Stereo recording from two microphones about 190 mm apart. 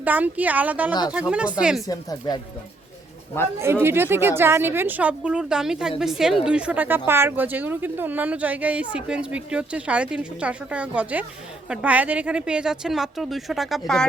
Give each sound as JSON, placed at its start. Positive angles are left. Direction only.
{"t": 0.0, "sound": "speech", "side_deg": -10}
{"t": 1.9, "sound": "speech", "side_deg": 20}
{"t": 3.6, "sound": "speech", "side_deg": -10}